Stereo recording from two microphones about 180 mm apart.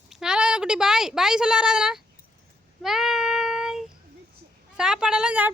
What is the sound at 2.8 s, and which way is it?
Child singing, centre (ahead or behind).